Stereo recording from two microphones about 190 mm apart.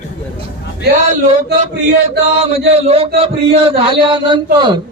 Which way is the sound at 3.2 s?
30° right (ahead or behind).